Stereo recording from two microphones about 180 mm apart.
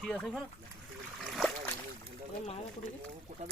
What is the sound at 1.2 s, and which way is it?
Splash, centre (ahead or behind).